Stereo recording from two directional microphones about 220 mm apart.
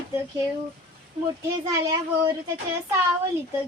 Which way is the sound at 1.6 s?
15° right (ahead or behind).